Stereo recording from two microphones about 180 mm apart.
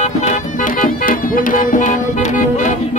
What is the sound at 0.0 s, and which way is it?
Music, 40° left (ahead or behind).